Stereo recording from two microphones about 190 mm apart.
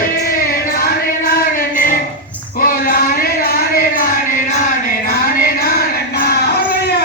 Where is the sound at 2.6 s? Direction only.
50° left (ahead or behind).